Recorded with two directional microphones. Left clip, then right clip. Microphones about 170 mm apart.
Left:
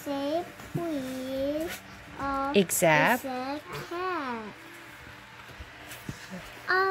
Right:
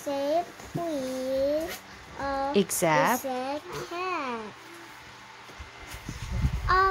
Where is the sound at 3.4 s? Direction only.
20° right (ahead or behind).